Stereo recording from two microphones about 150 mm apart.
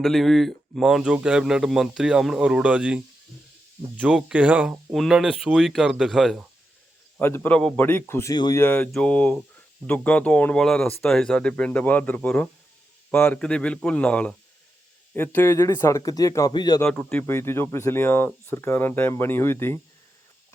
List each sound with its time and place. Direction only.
0.0 s speech: centre (ahead or behind)
7.2 s speech: 15° left (ahead or behind)
8.6 s speech: 10° left (ahead or behind); by 16.8 s 30° left (ahead or behind)
16.8 s speech: 5° left (ahead or behind)